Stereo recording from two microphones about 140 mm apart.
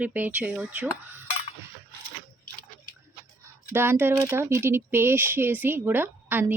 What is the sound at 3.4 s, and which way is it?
Speech, 15° right (ahead or behind).